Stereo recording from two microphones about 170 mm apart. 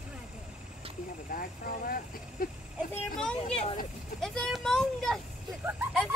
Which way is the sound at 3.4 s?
35° left (ahead or behind).